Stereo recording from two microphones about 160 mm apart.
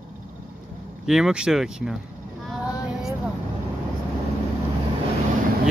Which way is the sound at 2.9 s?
Centre (ahead or behind).